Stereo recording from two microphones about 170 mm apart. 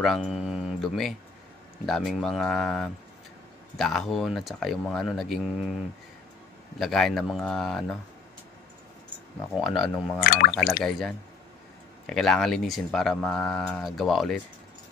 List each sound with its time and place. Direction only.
0.0 s speech: centre (ahead or behind)
6.8 s speech: centre (ahead or behind)
9.6 s speech: centre (ahead or behind)
10.2 s speech: 60° left (ahead or behind)
10.8 s speech: centre (ahead or behind)